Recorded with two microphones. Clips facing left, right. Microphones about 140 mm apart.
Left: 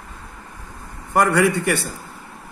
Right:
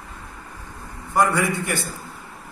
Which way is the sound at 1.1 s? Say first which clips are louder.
Left 3 dB; 65° left (ahead or behind).